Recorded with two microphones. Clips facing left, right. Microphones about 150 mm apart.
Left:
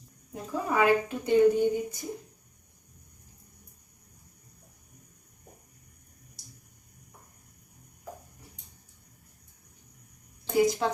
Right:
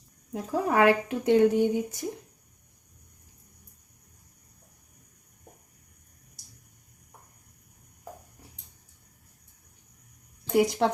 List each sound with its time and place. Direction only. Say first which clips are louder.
0.3 s a woman's voice: right 3 dB; 75° right (ahead or behind)
10.5 s a woman's voice: right 1 dB; 70° right (ahead or behind)